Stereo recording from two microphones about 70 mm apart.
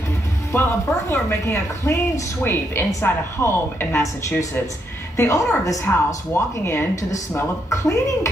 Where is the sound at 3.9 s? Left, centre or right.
Left.